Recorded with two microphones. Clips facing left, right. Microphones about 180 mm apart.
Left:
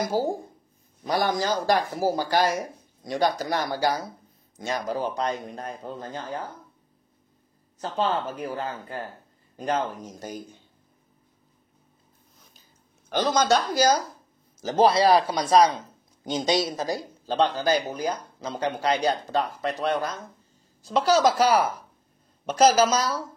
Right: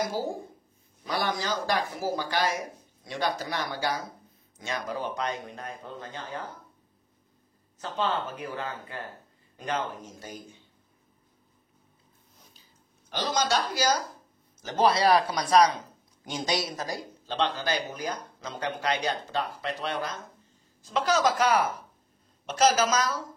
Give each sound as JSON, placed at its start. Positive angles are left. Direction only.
{"t": 0.2, "sound": "speech", "side_deg": 40}
{"t": 7.8, "sound": "speech", "side_deg": 40}
{"t": 13.1, "sound": "speech", "side_deg": 50}
{"t": 20.8, "sound": "speech", "side_deg": 35}